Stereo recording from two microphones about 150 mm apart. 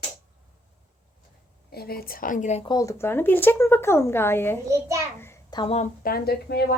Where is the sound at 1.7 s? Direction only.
90° left; by 2.6 s 55° left (ahead or behind).